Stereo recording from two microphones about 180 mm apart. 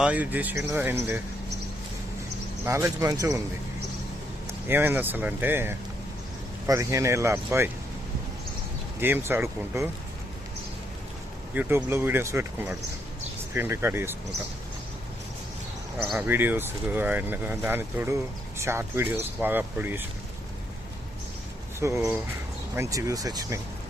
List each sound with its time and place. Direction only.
0.0 s speech: 10° right (ahead or behind)
2.6 s speech: 15° right (ahead or behind)
4.7 s speech: 10° right (ahead or behind)
9.0 s speech: 10° right (ahead or behind)
11.5 s speech: 10° right (ahead or behind)
16.1 s speech: 10° right (ahead or behind)
21.8 s speech: 15° right (ahead or behind)